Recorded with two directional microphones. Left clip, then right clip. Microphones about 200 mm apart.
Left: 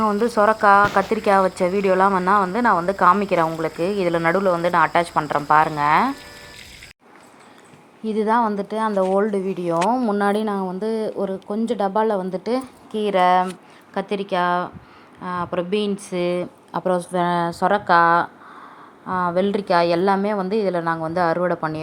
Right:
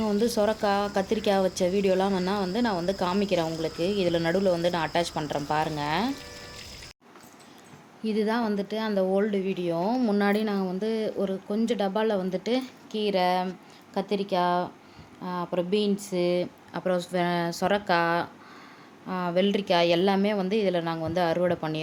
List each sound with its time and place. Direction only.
0.0 s speech: 15° right (ahead or behind)
3.8 s speech: 20° left (ahead or behind)
4.1 s speech: 10° right (ahead or behind)
8.0 s a woman's voice: 5° left (ahead or behind)